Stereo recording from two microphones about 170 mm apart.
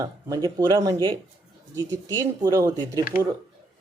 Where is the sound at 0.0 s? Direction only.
20° right (ahead or behind).